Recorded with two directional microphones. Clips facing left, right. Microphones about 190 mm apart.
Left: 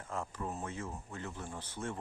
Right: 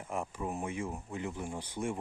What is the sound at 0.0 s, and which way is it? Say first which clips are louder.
Speech: right 3 dB; 15° right (ahead or behind).